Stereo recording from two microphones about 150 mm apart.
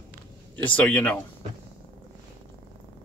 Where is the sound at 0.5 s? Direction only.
10° left (ahead or behind).